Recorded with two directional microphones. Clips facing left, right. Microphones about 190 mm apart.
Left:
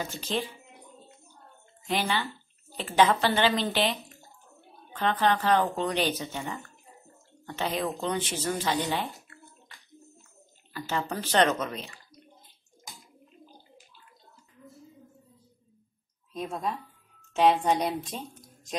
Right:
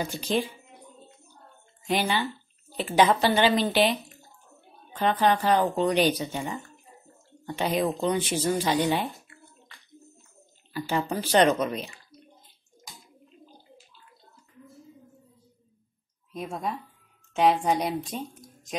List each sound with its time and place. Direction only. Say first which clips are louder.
0.0 s a woman's voice: right 4 dB; 15° right (ahead or behind)
1.9 s a woman's voice: right 3 dB; 15° right (ahead or behind)
4.9 s a woman's voice: right 2 dB; 15° right (ahead or behind)
10.7 s a woman's voice: right 4 dB; 15° right (ahead or behind)
16.3 s speech: even; 5° right (ahead or behind)